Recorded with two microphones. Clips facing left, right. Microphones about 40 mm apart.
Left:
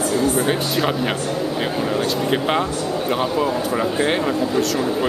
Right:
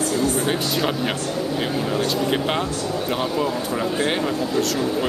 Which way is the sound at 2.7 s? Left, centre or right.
Centre.